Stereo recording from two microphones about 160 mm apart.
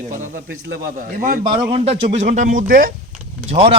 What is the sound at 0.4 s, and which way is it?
Speech, 75° right (ahead or behind).